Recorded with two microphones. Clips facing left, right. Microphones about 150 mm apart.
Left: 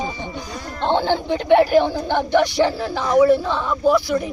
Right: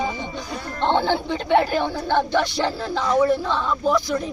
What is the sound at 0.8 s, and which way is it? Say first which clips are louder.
Speech: left 1 dB; 15° left (ahead or behind).